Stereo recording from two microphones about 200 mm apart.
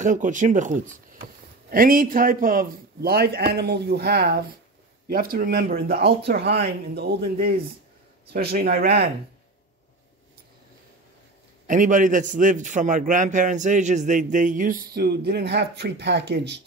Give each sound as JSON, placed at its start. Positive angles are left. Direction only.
{"t": 0.0, "sound": "a man's voice", "side_deg": -40}
{"t": 11.6, "sound": "a man's voice", "side_deg": -40}